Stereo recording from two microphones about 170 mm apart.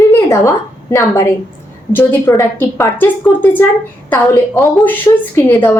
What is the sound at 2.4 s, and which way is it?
A woman's voice, 15° left (ahead or behind).